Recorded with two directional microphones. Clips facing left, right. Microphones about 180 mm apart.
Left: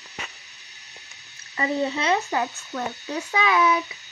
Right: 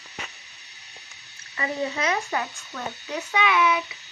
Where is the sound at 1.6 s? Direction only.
30° left (ahead or behind).